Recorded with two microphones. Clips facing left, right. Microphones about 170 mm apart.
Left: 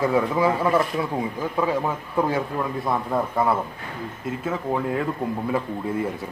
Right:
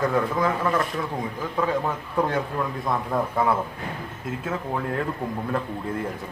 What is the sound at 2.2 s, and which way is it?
Speech, 5° left (ahead or behind).